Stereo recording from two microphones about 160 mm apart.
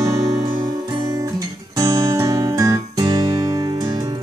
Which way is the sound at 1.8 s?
20° right (ahead or behind).